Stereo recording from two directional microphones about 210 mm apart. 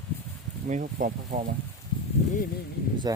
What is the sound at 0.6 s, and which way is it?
Speech, 40° right (ahead or behind).